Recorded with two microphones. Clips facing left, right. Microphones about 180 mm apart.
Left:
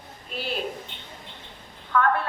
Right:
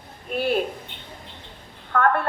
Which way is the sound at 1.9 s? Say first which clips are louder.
Right 2 dB; 55° right (ahead or behind).